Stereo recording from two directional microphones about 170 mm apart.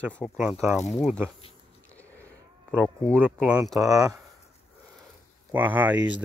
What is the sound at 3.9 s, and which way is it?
Speech, 20° right (ahead or behind).